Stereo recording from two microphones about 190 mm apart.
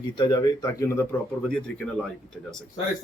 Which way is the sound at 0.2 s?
20° left (ahead or behind).